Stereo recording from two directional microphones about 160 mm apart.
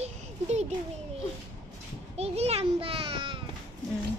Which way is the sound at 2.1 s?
40° right (ahead or behind).